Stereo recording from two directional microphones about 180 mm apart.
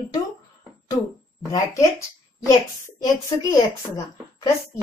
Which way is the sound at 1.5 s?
20° left (ahead or behind).